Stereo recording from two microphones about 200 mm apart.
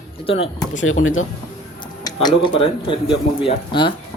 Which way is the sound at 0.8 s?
90° left.